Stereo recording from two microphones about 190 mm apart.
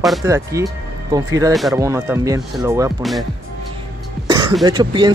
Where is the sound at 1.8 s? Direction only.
15° right (ahead or behind).